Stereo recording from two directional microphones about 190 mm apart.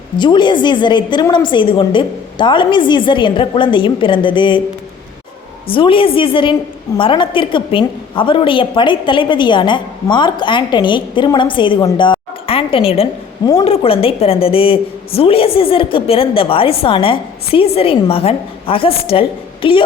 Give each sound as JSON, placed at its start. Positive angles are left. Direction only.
{"t": 0.2, "sound": "a woman's voice", "side_deg": 25}
{"t": 5.6, "sound": "a woman's voice", "side_deg": 25}